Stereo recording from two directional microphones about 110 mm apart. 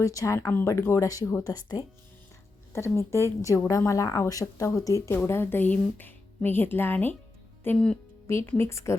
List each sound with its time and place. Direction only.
0.0 s a woman's voice: 30° left (ahead or behind)
2.7 s a woman's voice: 25° left (ahead or behind)
8.3 s a woman's voice: 25° left (ahead or behind)